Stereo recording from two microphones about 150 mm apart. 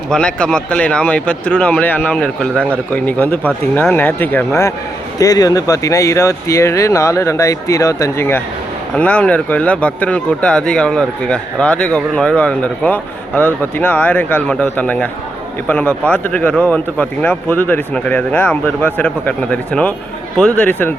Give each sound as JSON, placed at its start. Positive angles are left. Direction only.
{"t": 0.1, "sound": "speech", "side_deg": 5}